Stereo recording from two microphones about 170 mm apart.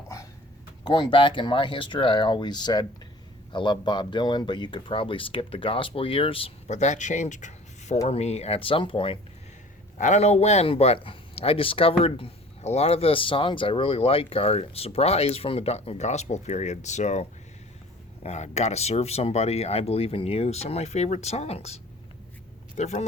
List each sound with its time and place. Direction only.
0.9 s speech: 30° left (ahead or behind)
22.8 s speech: 40° left (ahead or behind)